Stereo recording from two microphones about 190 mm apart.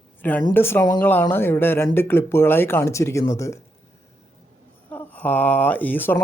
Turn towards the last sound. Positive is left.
turn(degrees=10)  # may be behind; listen again after turning